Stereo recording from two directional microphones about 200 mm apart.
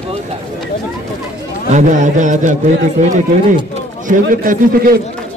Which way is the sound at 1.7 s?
40° right (ahead or behind).